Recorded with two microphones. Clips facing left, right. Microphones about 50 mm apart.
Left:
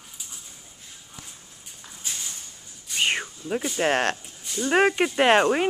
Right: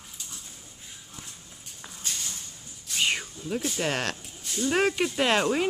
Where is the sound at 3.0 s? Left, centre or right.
Left.